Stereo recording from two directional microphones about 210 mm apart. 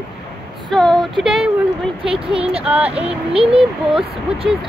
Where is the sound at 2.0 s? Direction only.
25° right (ahead or behind).